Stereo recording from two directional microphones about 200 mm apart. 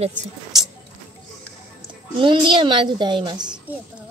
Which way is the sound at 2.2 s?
25° right (ahead or behind).